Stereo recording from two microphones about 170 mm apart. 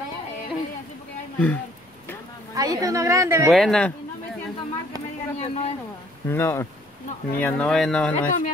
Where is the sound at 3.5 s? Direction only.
Centre (ahead or behind).